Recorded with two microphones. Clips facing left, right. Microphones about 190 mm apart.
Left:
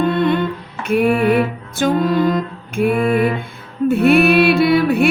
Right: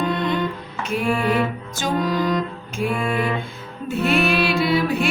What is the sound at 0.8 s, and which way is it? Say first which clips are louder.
Music: left 7 dB; 60° left (ahead or behind).